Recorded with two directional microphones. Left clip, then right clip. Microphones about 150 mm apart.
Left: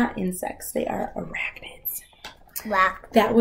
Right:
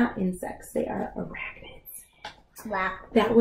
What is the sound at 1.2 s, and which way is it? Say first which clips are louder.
Speech: left 3 dB; 15° left (ahead or behind).